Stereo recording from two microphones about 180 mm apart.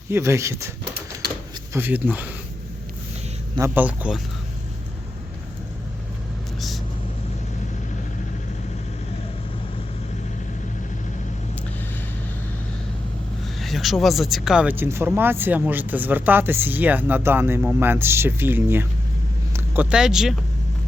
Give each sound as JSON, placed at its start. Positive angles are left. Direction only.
{"t": 0.1, "sound": "speech", "side_deg": -15}
{"t": 1.7, "sound": "speech", "side_deg": -10}
{"t": 3.8, "sound": "speech", "side_deg": -10}
{"t": 6.6, "sound": "vehicle", "side_deg": 0}
{"t": 13.6, "sound": "speech", "side_deg": 0}